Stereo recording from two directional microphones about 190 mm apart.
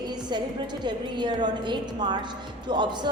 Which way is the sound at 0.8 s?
25° right (ahead or behind).